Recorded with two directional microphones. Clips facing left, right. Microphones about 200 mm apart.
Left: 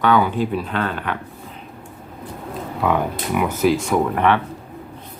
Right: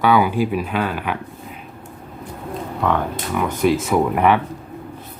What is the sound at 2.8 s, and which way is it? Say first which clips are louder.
Speech: left 1 dB; 10° left (ahead or behind).